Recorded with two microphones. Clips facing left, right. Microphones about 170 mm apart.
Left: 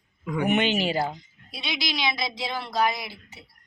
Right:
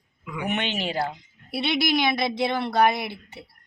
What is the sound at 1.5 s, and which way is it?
A woman's voice, 60° right (ahead or behind).